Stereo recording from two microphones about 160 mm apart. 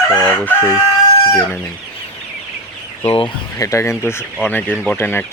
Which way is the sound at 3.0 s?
35° left (ahead or behind).